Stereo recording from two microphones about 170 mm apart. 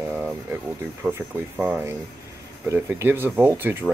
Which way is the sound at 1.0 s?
10° right (ahead or behind).